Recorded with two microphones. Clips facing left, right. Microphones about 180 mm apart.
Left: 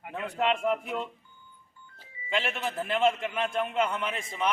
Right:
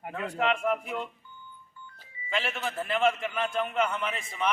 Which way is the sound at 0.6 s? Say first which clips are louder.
Left 1 dB; centre (ahead or behind).